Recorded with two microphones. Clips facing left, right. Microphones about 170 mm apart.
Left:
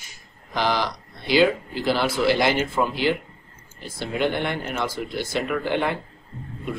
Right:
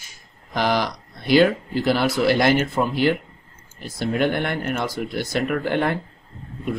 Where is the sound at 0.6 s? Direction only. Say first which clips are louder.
Right 2 dB; 50° right (ahead or behind).